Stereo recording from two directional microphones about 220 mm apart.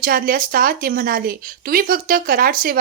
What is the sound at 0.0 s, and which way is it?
Speech, 40° right (ahead or behind).